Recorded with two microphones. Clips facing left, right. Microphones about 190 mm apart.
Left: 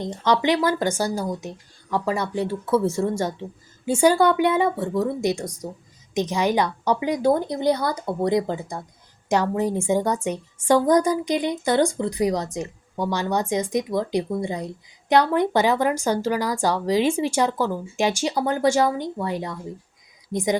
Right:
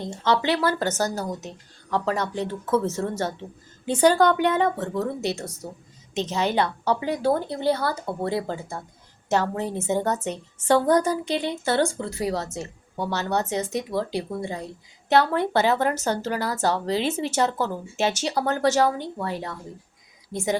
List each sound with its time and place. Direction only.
0.0 s speech: 15° left (ahead or behind)